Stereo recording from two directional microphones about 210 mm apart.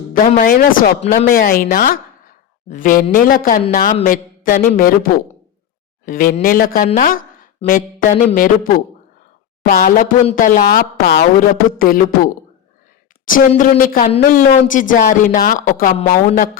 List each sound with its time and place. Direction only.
0.1 s a woman's voice: 40° left (ahead or behind)